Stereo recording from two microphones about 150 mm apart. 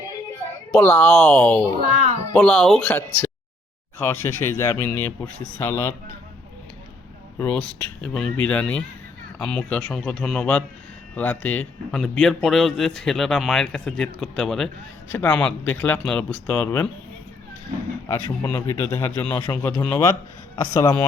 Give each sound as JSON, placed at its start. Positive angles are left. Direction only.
{"t": 0.7, "sound": "speech", "side_deg": 10}
{"t": 1.8, "sound": "a child's voice", "side_deg": -50}
{"t": 2.3, "sound": "speech", "side_deg": 5}
{"t": 7.3, "sound": "a man's voice", "side_deg": 10}
{"t": 18.4, "sound": "speech", "side_deg": 15}